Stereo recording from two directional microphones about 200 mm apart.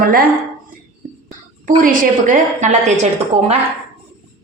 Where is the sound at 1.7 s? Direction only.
40° right (ahead or behind).